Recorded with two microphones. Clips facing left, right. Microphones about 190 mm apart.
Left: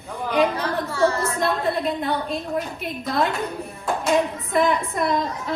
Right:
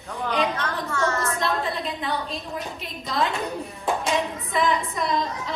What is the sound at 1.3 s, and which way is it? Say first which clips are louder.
A woman's voice: left 4 dB; 55° left (ahead or behind).